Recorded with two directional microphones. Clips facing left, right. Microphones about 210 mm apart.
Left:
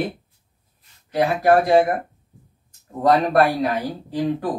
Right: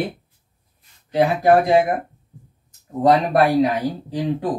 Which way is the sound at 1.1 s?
20° right (ahead or behind).